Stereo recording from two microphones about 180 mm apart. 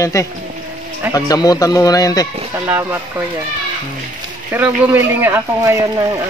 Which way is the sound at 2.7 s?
10° right (ahead or behind).